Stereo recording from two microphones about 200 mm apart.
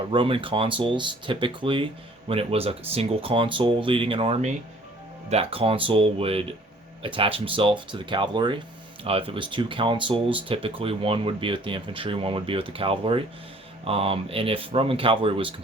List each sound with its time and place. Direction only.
0.1 s speech: 25° right (ahead or behind)